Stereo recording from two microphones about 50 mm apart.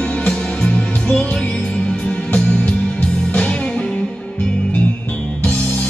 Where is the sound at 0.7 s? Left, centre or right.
Centre.